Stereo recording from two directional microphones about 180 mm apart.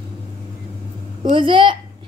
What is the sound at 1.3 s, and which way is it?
Speech, 25° right (ahead or behind).